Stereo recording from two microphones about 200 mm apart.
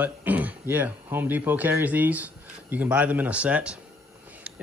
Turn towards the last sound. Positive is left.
turn(degrees=-5)  # may be behind; listen again after turning